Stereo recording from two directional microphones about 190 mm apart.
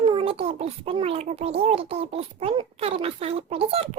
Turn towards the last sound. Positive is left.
turn(degrees=-30)  # may be behind; listen again after turning